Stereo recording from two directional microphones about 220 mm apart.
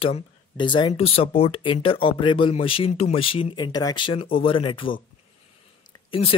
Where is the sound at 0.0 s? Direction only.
25° left (ahead or behind).